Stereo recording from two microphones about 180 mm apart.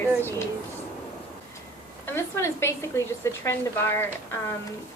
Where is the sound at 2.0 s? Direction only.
15° left (ahead or behind).